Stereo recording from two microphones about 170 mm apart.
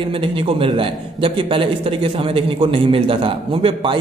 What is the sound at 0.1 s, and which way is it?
A man's voice, 30° right (ahead or behind).